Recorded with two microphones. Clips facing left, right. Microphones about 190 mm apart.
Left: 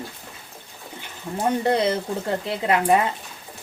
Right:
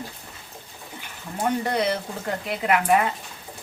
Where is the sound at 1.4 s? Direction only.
25° left (ahead or behind).